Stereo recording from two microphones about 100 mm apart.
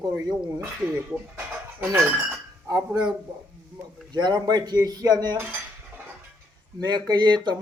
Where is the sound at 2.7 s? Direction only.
35° right (ahead or behind).